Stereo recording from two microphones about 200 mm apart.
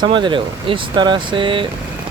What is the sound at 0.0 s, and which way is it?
Speech, 25° right (ahead or behind).